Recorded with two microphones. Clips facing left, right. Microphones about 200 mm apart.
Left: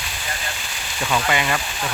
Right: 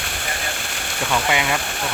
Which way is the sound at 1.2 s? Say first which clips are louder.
Right 1 dB; 10° right (ahead or behind).